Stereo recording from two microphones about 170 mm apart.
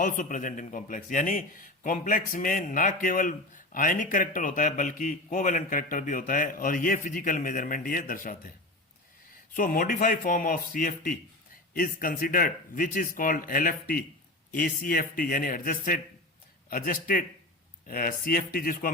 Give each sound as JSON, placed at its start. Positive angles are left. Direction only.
{"t": 0.0, "sound": "a man's voice", "side_deg": 50}
{"t": 9.6, "sound": "speech", "side_deg": 55}